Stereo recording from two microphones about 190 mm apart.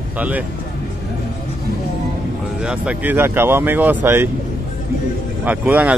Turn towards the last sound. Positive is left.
turn(degrees=-10)  # may be behind; listen again after turning